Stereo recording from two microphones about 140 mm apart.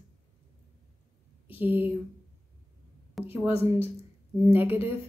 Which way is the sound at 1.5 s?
15° right (ahead or behind).